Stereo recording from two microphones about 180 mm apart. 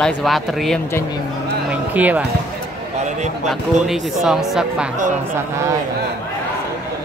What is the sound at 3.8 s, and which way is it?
Speech, centre (ahead or behind).